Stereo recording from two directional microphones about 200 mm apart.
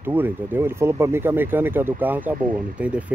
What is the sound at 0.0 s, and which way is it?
Speech, 10° right (ahead or behind).